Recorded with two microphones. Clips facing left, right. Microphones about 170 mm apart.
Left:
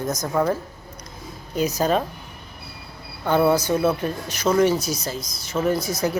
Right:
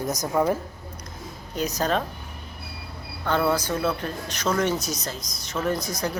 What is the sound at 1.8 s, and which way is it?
Speech, 5° left (ahead or behind).